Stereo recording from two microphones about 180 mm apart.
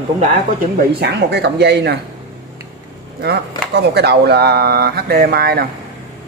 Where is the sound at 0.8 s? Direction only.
65° right (ahead or behind).